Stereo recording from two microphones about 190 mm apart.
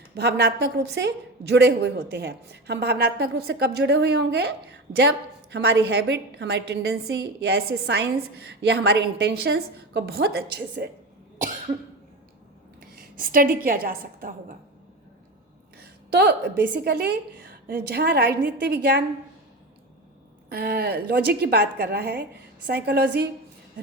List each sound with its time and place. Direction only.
0.1 s a woman's voice: 60° right (ahead or behind)
13.0 s a woman's voice: 45° right (ahead or behind)
15.8 s a sound: 55° right (ahead or behind)
16.8 s a woman's voice: 55° right (ahead or behind)
20.5 s a woman's voice: 55° right (ahead or behind)